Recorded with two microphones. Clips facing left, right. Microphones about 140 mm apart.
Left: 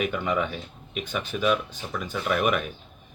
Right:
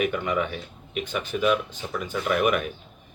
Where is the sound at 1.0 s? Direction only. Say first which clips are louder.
Right 1 dB; 15° right (ahead or behind).